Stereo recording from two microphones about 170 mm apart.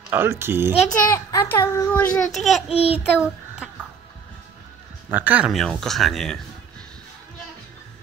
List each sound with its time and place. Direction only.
0.1 s a child's voice: 15° right (ahead or behind)
0.8 s a child's voice: 20° left (ahead or behind)
2.1 s speech: centre (ahead or behind)
2.7 s child singing: 35° left (ahead or behind)
3.0 s child singing: 5° right (ahead or behind)
5.1 s speech: 10° right (ahead or behind)